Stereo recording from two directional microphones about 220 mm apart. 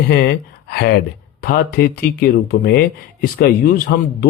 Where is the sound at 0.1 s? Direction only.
50° left (ahead or behind).